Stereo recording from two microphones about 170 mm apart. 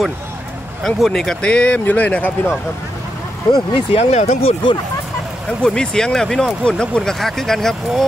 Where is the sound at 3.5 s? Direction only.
35° left (ahead or behind).